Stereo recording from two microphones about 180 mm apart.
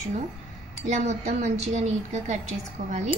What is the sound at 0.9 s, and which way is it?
A woman's voice, 40° right (ahead or behind).